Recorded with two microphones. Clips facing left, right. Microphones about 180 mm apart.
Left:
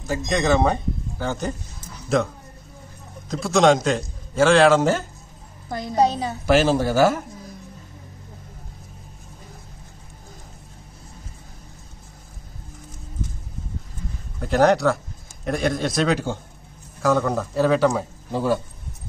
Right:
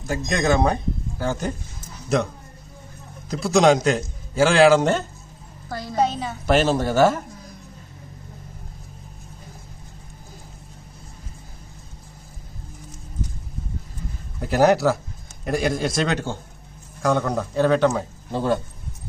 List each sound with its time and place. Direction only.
0.0 s speech: centre (ahead or behind)
3.3 s a man's voice: centre (ahead or behind)
5.7 s a woman's voice: 20° left (ahead or behind)
5.9 s a sound: 35° left (ahead or behind)
6.4 s speech: 5° left (ahead or behind)
14.4 s a man's voice: 5° right (ahead or behind)